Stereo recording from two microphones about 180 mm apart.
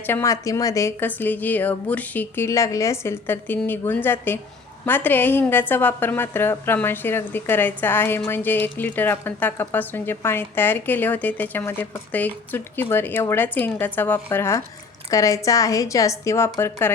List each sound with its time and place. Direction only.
0.1 s a woman's voice: 15° left (ahead or behind)